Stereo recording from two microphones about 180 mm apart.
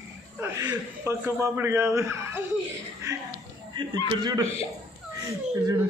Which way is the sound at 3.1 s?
20° right (ahead or behind).